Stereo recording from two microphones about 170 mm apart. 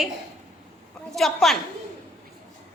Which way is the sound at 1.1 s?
Centre (ahead or behind).